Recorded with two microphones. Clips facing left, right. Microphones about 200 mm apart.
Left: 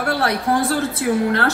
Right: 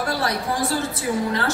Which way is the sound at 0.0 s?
60° left (ahead or behind).